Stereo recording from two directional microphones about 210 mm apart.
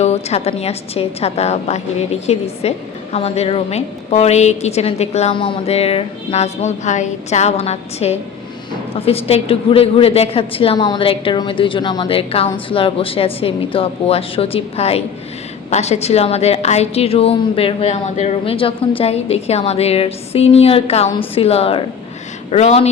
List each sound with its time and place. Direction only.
0.0 s a woman's voice: 30° left (ahead or behind)